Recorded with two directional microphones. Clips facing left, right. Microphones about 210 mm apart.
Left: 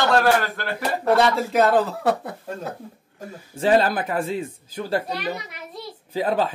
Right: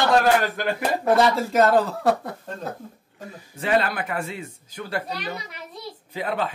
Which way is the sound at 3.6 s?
35° left (ahead or behind).